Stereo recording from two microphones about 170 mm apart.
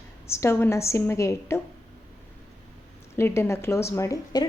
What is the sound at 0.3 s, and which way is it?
A woman's voice, 15° left (ahead or behind).